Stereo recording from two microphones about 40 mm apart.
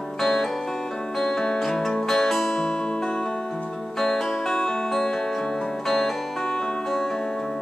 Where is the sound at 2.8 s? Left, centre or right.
Left.